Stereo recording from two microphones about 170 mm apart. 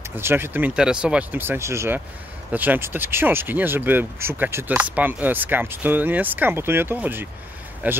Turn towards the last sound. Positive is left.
turn(degrees=-10)  # may be behind; listen again after turning